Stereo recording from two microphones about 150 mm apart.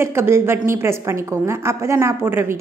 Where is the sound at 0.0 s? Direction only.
15° right (ahead or behind).